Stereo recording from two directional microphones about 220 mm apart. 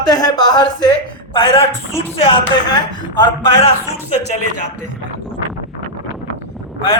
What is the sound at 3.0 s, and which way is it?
Speech, 20° left (ahead or behind).